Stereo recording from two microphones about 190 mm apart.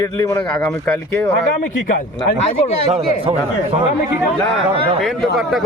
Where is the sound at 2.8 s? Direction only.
30° right (ahead or behind).